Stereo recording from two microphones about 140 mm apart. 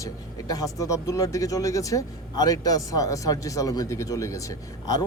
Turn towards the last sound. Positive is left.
turn(degrees=25)  # may be behind; listen again after turning